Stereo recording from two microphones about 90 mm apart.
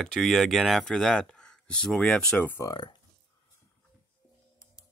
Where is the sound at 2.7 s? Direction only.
55° left (ahead or behind).